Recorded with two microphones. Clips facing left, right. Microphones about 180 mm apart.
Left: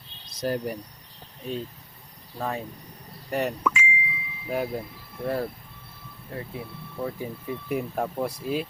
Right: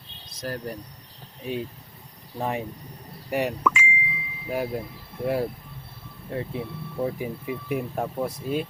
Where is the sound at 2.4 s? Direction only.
20° right (ahead or behind).